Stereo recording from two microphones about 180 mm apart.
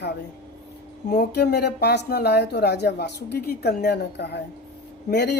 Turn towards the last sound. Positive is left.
turn(degrees=65)  # may be behind; listen again after turning